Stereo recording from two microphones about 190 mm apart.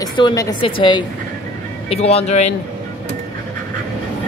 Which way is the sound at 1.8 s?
30° left (ahead or behind).